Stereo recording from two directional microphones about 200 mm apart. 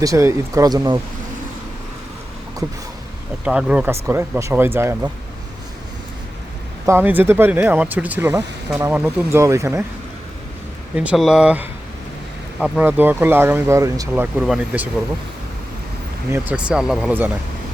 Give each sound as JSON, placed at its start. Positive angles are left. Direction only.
{"t": 0.0, "sound": "speech", "side_deg": -15}
{"t": 3.4, "sound": "speech", "side_deg": -5}
{"t": 6.8, "sound": "speech", "side_deg": -10}
{"t": 10.9, "sound": "speech", "side_deg": -5}
{"t": 14.3, "sound": "speech", "side_deg": -5}
{"t": 16.3, "sound": "speech", "side_deg": -5}